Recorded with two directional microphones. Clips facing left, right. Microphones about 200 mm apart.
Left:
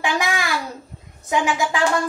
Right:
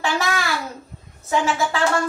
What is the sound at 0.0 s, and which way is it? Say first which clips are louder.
Babbling: even; 15° left (ahead or behind).